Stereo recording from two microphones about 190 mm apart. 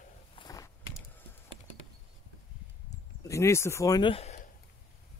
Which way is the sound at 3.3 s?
15° left (ahead or behind).